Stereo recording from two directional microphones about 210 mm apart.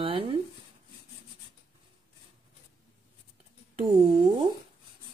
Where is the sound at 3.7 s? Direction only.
25° right (ahead or behind).